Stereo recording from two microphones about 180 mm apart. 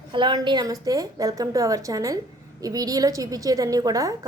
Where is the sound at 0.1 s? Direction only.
25° right (ahead or behind).